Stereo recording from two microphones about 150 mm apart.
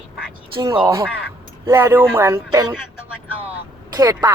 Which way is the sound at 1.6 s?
15° right (ahead or behind).